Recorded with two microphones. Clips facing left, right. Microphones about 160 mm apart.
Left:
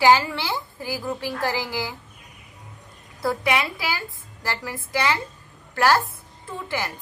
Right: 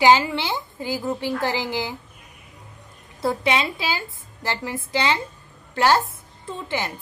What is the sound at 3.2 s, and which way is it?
A woman's voice, 25° right (ahead or behind).